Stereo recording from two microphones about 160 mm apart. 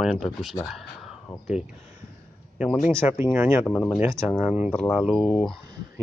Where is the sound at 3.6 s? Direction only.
5° left (ahead or behind).